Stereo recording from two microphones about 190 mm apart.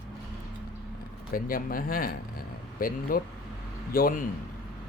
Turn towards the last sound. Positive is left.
turn(degrees=50)  # may be behind; listen again after turning